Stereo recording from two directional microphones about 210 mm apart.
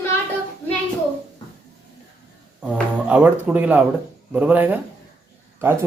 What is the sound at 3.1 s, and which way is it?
Speech, 5° right (ahead or behind).